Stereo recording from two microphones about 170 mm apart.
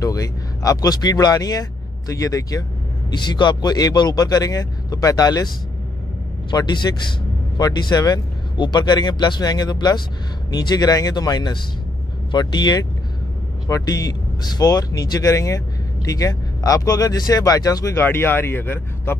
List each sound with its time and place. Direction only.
0.0 s speech: 20° left (ahead or behind)
6.5 s speech: 25° left (ahead or behind)